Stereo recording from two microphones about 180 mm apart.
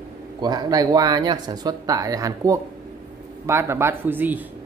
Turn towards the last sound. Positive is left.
turn(degrees=-10)  # may be behind; listen again after turning